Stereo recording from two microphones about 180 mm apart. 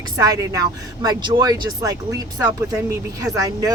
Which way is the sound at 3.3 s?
20° right (ahead or behind).